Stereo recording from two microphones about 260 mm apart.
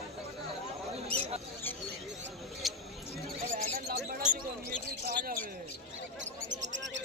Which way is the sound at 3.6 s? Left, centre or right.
Right.